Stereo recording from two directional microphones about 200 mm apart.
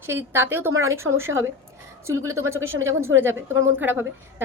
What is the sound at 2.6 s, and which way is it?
Speech, 80° right.